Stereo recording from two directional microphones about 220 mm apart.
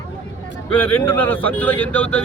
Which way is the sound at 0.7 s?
10° left (ahead or behind).